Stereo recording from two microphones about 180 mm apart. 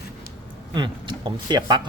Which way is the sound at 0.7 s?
25° right (ahead or behind).